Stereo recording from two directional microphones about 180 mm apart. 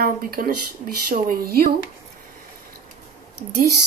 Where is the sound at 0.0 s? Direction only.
55° right (ahead or behind).